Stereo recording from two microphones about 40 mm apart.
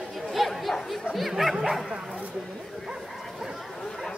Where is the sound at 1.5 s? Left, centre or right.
Centre.